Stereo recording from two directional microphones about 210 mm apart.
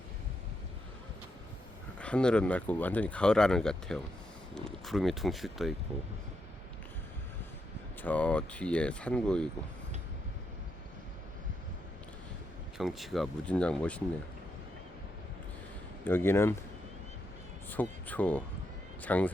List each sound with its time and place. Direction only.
2.0 s speech: 5° left (ahead or behind)
8.0 s speech: 5° left (ahead or behind)
12.7 s speech: centre (ahead or behind)
16.0 s speech: 10° left (ahead or behind)
17.7 s speech: 10° left (ahead or behind)